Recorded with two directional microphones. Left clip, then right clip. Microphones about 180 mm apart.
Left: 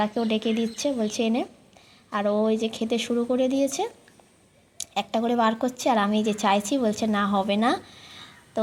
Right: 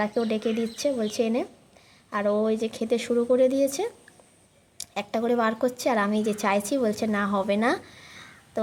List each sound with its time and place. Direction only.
0.0 s a woman's voice: 5° right (ahead or behind)